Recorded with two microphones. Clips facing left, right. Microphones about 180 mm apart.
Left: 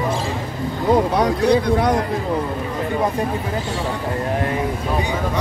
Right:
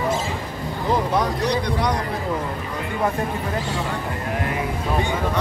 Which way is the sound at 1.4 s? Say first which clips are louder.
Left 6 dB; 50° left (ahead or behind).